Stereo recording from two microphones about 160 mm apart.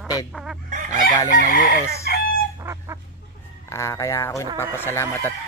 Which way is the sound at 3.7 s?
20° left (ahead or behind).